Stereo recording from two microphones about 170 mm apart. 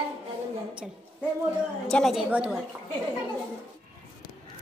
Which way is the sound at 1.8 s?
Centre (ahead or behind).